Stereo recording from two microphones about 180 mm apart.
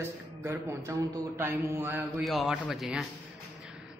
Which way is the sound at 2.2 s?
Centre (ahead or behind).